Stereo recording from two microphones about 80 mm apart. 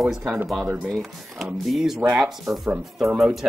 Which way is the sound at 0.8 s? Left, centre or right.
Centre.